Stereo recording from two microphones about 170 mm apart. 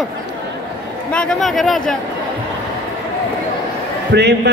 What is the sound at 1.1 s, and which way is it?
Speech, 5° left (ahead or behind).